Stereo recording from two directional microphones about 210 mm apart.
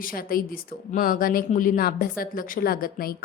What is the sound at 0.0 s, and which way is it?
Speech, 45° left (ahead or behind).